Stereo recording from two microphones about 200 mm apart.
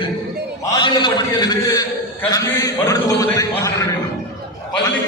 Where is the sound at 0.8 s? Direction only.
20° left (ahead or behind).